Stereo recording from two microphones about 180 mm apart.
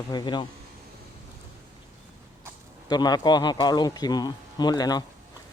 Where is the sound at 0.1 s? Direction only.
25° left (ahead or behind).